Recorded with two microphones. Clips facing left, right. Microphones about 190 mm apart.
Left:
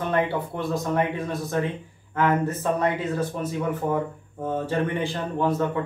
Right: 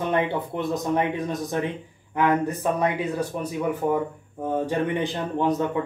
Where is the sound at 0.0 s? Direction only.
20° right (ahead or behind).